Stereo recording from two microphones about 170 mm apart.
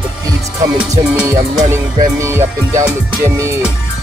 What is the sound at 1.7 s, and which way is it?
Music, 15° right (ahead or behind).